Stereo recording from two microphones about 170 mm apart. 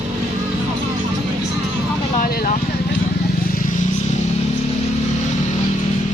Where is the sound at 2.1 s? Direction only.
60° left (ahead or behind).